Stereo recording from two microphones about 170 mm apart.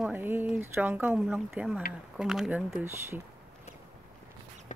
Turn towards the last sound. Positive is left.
turn(degrees=45)  # may be behind; listen again after turning